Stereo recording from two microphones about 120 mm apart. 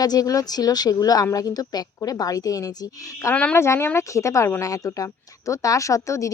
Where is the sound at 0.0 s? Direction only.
30° left (ahead or behind).